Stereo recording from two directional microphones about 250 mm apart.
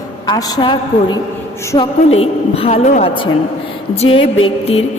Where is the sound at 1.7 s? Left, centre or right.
Left.